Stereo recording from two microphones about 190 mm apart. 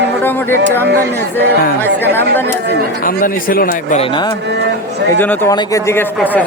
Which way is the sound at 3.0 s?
45° left (ahead or behind).